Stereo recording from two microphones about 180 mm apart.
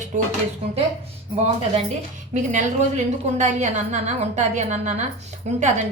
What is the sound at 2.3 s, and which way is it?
A woman's voice, 45° right (ahead or behind).